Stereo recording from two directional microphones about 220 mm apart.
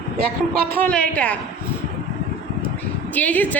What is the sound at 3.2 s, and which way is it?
Speech, 5° left (ahead or behind).